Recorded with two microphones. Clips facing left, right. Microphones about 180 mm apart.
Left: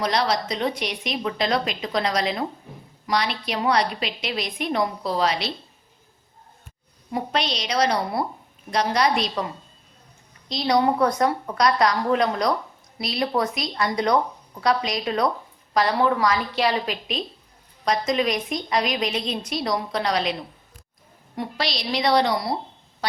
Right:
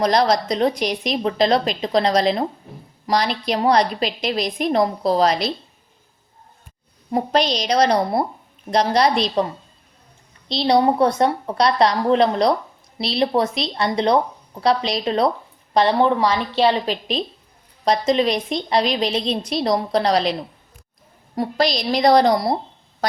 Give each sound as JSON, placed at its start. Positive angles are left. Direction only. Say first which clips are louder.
{"t": 0.0, "sound": "a woman's voice", "louder": "right 6 dB", "side_deg": -40}
{"t": 7.5, "sound": "a woman's voice", "louder": "right 3 dB", "side_deg": -35}
{"t": 10.5, "sound": "a woman's voice", "louder": "right 4 dB", "side_deg": -30}
{"t": 21.3, "sound": "a woman's voice", "louder": "right 8 dB", "side_deg": -40}